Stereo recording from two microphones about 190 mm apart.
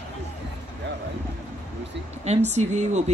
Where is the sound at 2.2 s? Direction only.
35° right (ahead or behind).